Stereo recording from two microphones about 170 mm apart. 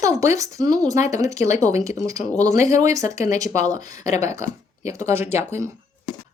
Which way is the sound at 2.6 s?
20° right (ahead or behind).